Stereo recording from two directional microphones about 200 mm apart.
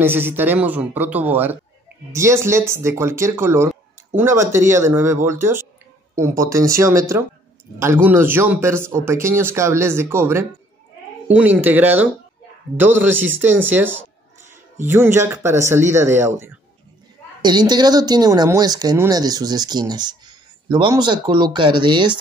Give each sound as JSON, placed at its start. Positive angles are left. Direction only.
{"t": 0.0, "sound": "speech", "side_deg": -10}
{"t": 14.8, "sound": "speech", "side_deg": -10}